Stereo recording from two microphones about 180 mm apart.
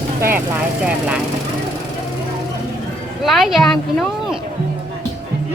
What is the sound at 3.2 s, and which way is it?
Speech, centre (ahead or behind).